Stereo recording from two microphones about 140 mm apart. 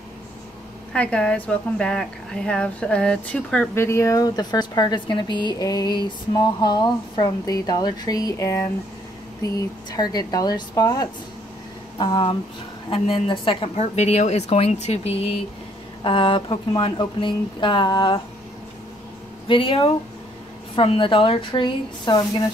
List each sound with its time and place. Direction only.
0.9 s speech: 5° left (ahead or behind)
3.7 s a woman's voice: 20° left (ahead or behind); by 18.2 s 35° left (ahead or behind)
19.4 s speech: 40° left (ahead or behind)